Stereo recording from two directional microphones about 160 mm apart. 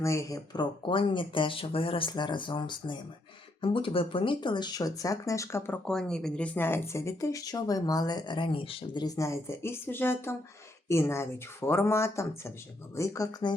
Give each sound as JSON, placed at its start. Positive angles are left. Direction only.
{"t": 0.0, "sound": "speech", "side_deg": 20}